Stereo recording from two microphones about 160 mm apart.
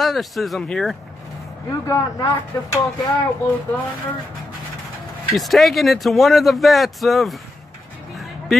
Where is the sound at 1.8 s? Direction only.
20° left (ahead or behind).